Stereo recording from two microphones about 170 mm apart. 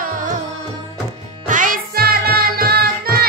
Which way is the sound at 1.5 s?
50° right (ahead or behind).